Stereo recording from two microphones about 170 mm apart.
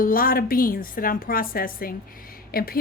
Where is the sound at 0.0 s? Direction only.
55° left (ahead or behind).